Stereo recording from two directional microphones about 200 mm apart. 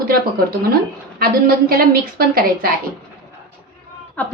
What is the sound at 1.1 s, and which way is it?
A woman's voice, 50° right (ahead or behind).